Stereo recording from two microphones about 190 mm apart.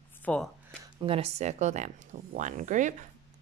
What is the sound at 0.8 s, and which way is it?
A woman's voice, 25° right (ahead or behind).